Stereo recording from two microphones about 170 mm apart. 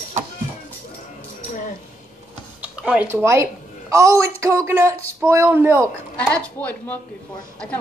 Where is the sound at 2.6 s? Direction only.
5° right (ahead or behind).